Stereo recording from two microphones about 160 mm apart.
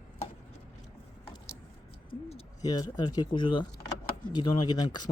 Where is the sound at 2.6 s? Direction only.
25° left (ahead or behind).